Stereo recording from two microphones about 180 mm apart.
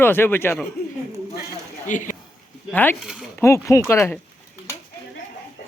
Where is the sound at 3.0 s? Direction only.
5° right (ahead or behind).